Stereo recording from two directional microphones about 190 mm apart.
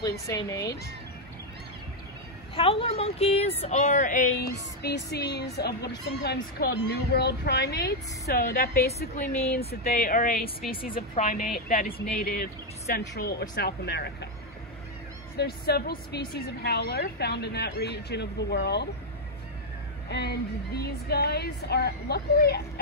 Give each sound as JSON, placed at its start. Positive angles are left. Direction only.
{"t": 0.3, "sound": "speech", "side_deg": 15}
{"t": 2.5, "sound": "a woman's voice", "side_deg": 30}
{"t": 4.8, "sound": "a woman's voice", "side_deg": 60}
{"t": 15.3, "sound": "a woman's voice", "side_deg": 55}
{"t": 20.1, "sound": "a woman's voice", "side_deg": 60}